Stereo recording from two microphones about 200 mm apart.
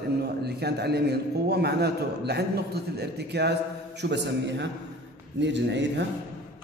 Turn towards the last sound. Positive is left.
turn(degrees=-60)  # may be behind; listen again after turning